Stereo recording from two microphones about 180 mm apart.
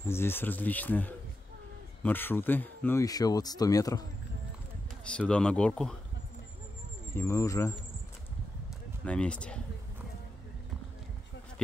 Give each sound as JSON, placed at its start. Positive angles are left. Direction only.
{"t": 0.1, "sound": "speech", "side_deg": 15}
{"t": 5.3, "sound": "speech", "side_deg": 5}
{"t": 7.2, "sound": "speech", "side_deg": 15}
{"t": 9.0, "sound": "speech", "side_deg": 5}